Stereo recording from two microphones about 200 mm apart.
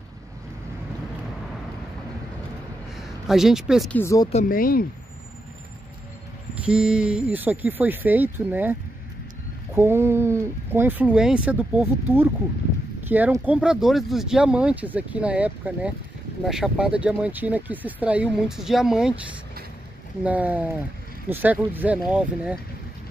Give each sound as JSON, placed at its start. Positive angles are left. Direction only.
{"t": 3.0, "sound": "speech", "side_deg": 0}
{"t": 3.9, "sound": "speech", "side_deg": 15}
{"t": 4.3, "sound": "speech", "side_deg": 40}
{"t": 6.6, "sound": "speech", "side_deg": -5}
{"t": 9.8, "sound": "speech", "side_deg": -10}
{"t": 20.2, "sound": "speech", "side_deg": -5}